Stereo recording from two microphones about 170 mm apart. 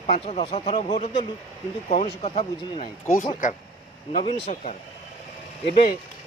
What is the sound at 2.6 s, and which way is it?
Speech, 25° left (ahead or behind).